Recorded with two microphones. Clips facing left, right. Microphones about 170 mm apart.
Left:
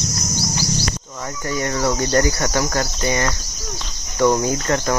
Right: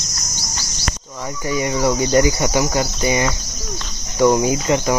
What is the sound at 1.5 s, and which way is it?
Cricket, 10° right (ahead or behind).